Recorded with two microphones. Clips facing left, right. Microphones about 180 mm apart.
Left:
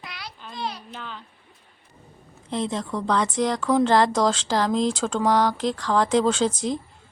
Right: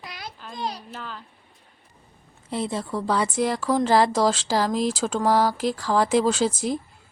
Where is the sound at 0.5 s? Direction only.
40° right (ahead or behind).